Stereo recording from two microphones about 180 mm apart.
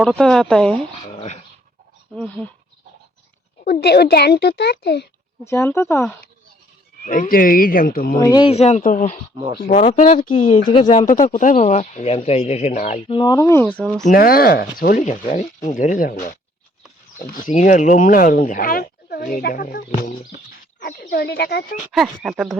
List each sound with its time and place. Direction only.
0.0 s speech: 5° left (ahead or behind)
1.1 s a sound: 40° left (ahead or behind)
2.1 s speech: 10° left (ahead or behind)
3.6 s a child's voice: 60° left (ahead or behind)
5.5 s speech: 15° left (ahead or behind)
7.0 s speech: 50° left (ahead or behind)
8.2 s speech: 25° left (ahead or behind)
8.8 s speech: 50° left (ahead or behind); by 13.8 s 10° left (ahead or behind)
14.0 s speech: 55° left (ahead or behind)
21.0 s a child's voice: 65° left (ahead or behind)
21.9 s speech: centre (ahead or behind)